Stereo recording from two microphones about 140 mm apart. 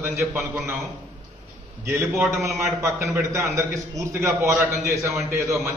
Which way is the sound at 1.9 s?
15° right (ahead or behind).